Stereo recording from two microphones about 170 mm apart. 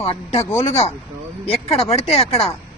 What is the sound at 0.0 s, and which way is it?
Speech, 40° left (ahead or behind).